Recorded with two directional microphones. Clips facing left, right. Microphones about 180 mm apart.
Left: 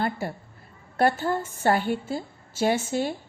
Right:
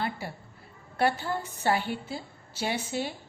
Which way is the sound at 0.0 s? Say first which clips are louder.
Left 5 dB; 50° left (ahead or behind).